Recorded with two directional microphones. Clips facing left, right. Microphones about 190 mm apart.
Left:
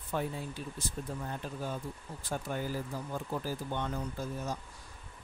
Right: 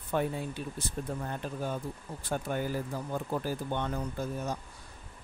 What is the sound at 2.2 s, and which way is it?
Speech, 60° right (ahead or behind).